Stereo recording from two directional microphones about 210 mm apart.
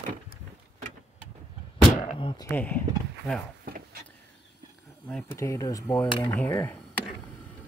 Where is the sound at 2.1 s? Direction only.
20° left (ahead or behind).